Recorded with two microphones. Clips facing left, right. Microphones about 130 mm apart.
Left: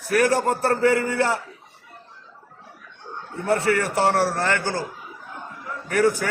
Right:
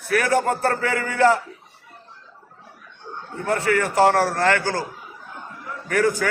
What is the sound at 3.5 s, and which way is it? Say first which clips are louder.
Speech: even; 35° left (ahead or behind).